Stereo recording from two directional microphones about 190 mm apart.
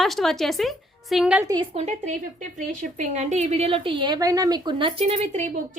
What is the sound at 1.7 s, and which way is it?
A woman's voice, 35° right (ahead or behind).